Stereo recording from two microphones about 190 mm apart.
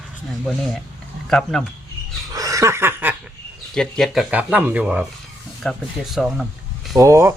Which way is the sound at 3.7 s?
5° left (ahead or behind).